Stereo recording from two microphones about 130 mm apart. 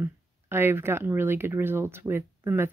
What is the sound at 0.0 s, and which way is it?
Speech, 20° right (ahead or behind).